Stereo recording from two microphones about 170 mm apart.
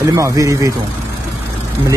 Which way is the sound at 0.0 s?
20° right (ahead or behind).